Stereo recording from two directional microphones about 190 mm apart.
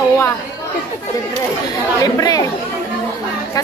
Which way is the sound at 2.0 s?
20° left (ahead or behind).